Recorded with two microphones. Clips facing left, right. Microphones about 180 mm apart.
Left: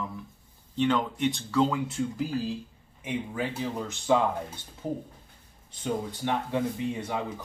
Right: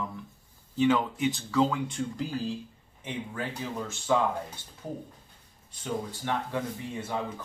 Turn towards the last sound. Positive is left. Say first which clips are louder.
# left 4 dB
turn(degrees=15)  # may be behind; listen again after turning